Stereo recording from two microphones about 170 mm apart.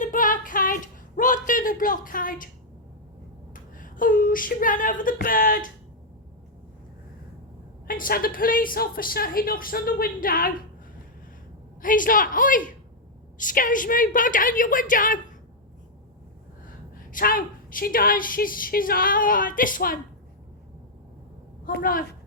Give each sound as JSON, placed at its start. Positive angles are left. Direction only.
{"t": 0.0, "sound": "a sound", "side_deg": 50}
{"t": 3.5, "sound": "a sound", "side_deg": 50}
{"t": 7.9, "sound": "a woman's voice", "side_deg": 55}
{"t": 11.8, "sound": "a woman's voice", "side_deg": 55}
{"t": 17.1, "sound": "a woman's voice", "side_deg": 55}
{"t": 21.7, "sound": "a woman's voice", "side_deg": 55}